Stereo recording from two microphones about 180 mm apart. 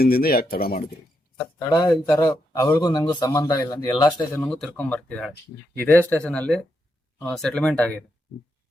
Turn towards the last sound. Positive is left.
turn(degrees=5)  # may be behind; listen again after turning